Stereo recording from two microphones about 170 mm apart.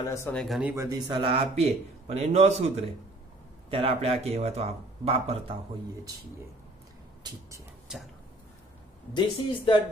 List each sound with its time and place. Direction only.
0.0 s speech: 15° left (ahead or behind)
0.3 s speech: 5° left (ahead or behind)
0.6 s speech: 10° right (ahead or behind)
0.8 s a man's voice: 20° right (ahead or behind); by 2.7 s 40° right (ahead or behind)
3.7 s a man's voice: 35° right (ahead or behind)
9.1 s speech: 30° left (ahead or behind)